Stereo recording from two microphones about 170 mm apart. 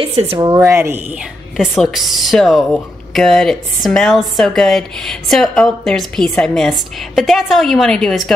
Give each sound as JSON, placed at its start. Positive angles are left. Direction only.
{"t": 0.0, "sound": "speech", "side_deg": -30}
{"t": 1.6, "sound": "speech", "side_deg": 0}